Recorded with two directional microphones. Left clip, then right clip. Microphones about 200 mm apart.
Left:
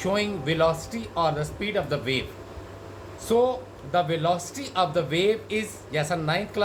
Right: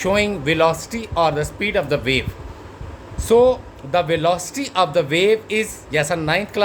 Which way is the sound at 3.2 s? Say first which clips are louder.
Right 9 dB; 60° right (ahead or behind).